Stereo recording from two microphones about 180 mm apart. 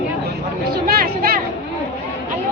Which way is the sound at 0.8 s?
55° right (ahead or behind).